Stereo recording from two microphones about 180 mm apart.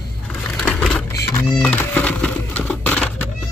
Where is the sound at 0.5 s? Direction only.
5° left (ahead or behind).